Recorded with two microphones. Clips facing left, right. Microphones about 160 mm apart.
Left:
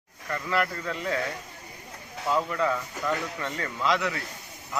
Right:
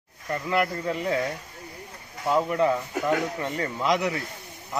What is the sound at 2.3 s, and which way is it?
Speech, 25° right (ahead or behind).